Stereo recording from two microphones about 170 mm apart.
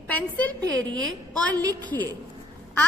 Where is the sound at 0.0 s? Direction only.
10° left (ahead or behind).